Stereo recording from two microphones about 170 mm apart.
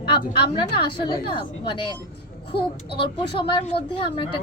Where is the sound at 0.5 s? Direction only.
30° left (ahead or behind).